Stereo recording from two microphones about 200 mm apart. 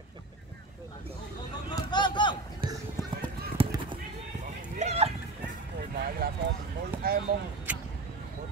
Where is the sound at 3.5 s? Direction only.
25° right (ahead or behind).